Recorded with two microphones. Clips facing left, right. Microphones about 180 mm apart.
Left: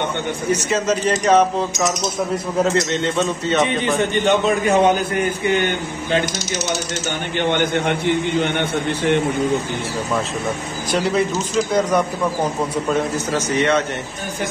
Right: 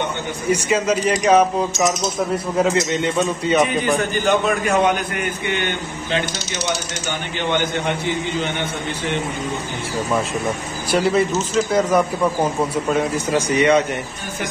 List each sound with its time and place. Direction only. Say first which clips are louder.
0.5 s speech: right 2 dB; 10° right (ahead or behind)
2.6 s speech: even; 10° right (ahead or behind)
3.7 s a man's voice: right 1 dB; centre (ahead or behind)
4.0 s a man's voice: left 2 dB; 25° left (ahead or behind); by 5.8 s 40° left (ahead or behind)
7.3 s a man's voice: left 3 dB; 55° left (ahead or behind)
10.9 s a man's voice: right 2 dB; 5° right (ahead or behind)
13.1 s speech: right 1 dB; 10° right (ahead or behind)